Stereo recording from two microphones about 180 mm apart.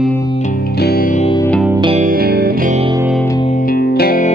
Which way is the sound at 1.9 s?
50° right (ahead or behind).